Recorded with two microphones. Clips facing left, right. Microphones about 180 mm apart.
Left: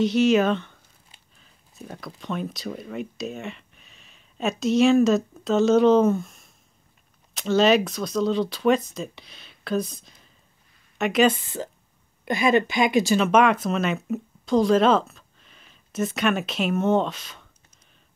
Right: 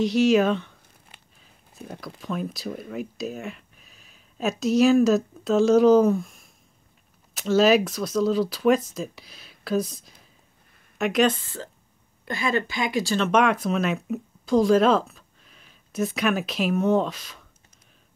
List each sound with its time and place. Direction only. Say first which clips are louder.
0.0 s speech: even; centre (ahead or behind)
11.4 s speech: left 5 dB; 20° left (ahead or behind)
13.2 s speech: left 2 dB; centre (ahead or behind)